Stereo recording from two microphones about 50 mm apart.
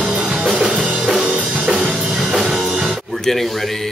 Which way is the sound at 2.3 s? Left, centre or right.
Centre.